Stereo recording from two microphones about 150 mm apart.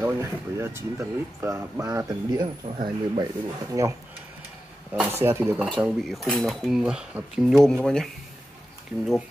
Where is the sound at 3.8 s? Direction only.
20° right (ahead or behind).